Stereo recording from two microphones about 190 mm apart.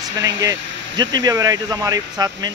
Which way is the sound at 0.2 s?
20° right (ahead or behind).